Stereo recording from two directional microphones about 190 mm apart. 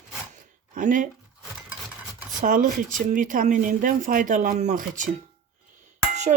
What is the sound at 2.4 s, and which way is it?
Speech, 45° right (ahead or behind).